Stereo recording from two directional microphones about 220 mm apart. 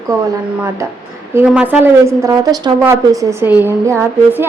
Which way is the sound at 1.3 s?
5° right (ahead or behind).